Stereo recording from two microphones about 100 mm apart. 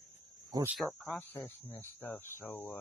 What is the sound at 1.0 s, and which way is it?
Speech, 20° left (ahead or behind).